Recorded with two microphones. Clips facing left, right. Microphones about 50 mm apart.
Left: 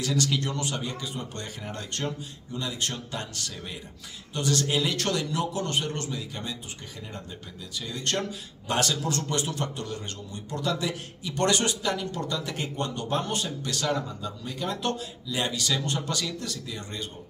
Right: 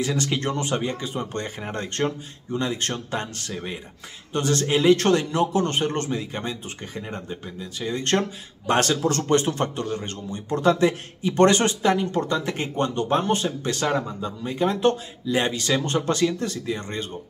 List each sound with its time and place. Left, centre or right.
0.0 s a man's voice: right
7.8 s a man's voice: right